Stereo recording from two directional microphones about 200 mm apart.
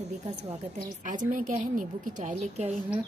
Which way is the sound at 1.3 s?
40° right (ahead or behind).